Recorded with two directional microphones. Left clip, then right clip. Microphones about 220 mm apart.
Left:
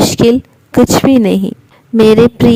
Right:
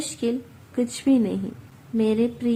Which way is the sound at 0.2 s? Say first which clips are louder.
Left 17 dB; 45° left (ahead or behind).